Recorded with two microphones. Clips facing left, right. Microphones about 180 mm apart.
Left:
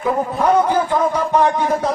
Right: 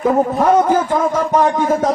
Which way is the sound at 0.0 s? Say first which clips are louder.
Right 4 dB; 45° right (ahead or behind).